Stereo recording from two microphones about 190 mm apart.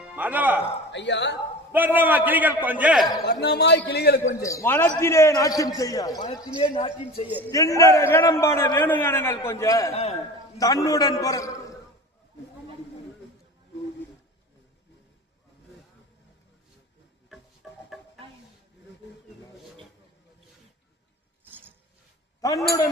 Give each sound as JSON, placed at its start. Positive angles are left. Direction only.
{"t": 0.2, "sound": "a man's voice", "side_deg": -10}
{"t": 0.9, "sound": "speech", "side_deg": 70}
{"t": 1.7, "sound": "a man's voice", "side_deg": -10}
{"t": 3.2, "sound": "a man's voice", "side_deg": 60}
{"t": 4.4, "sound": "a man's voice", "side_deg": 15}
{"t": 6.7, "sound": "speech", "side_deg": 35}
{"t": 7.3, "sound": "a man's voice", "side_deg": -10}
{"t": 7.8, "sound": "a man's voice", "side_deg": 15}
{"t": 9.9, "sound": "speech", "side_deg": 30}
{"t": 10.6, "sound": "a man's voice", "side_deg": 20}
{"t": 22.4, "sound": "a sound", "side_deg": 15}